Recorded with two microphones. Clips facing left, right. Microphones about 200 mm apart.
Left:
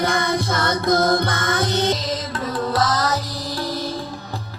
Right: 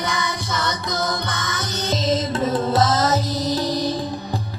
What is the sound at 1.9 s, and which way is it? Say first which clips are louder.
Music: right 5 dB; 25° right (ahead or behind).